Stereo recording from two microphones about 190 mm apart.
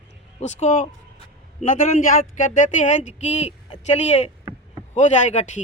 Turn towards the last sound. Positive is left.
turn(degrees=40)  # may be behind; listen again after turning